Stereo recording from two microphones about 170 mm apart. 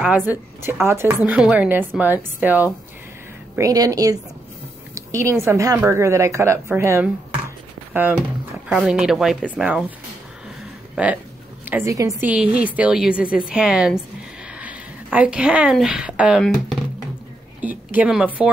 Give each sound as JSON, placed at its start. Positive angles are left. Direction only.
{"t": 0.1, "sound": "a woman's voice", "side_deg": -10}
{"t": 3.5, "sound": "a woman's voice", "side_deg": -20}
{"t": 11.0, "sound": "a woman's voice", "side_deg": -5}